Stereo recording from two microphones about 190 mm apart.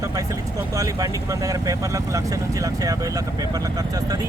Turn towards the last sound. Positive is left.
turn(degrees=-20)  # may be behind; listen again after turning